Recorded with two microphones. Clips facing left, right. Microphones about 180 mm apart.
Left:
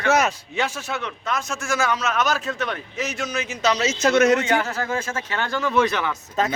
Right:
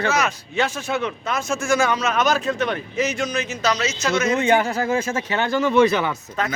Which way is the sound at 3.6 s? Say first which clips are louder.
Left 2 dB; 25° left (ahead or behind).